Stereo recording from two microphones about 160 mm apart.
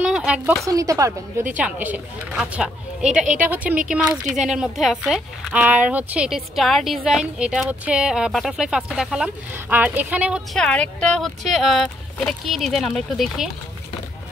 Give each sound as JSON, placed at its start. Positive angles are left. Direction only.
{"t": 0.0, "sound": "speech", "side_deg": -5}
{"t": 0.7, "sound": "a woman's voice", "side_deg": -20}
{"t": 1.6, "sound": "a woman's voice", "side_deg": -10}
{"t": 10.6, "sound": "speech", "side_deg": 5}